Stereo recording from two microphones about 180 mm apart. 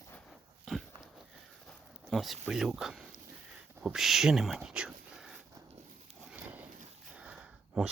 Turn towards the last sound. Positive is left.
turn(degrees=-5)  # may be behind; listen again after turning